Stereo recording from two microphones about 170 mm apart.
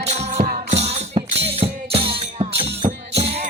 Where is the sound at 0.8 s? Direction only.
40° right (ahead or behind).